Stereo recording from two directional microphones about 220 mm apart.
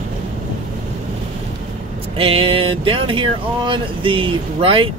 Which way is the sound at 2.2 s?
25° right (ahead or behind).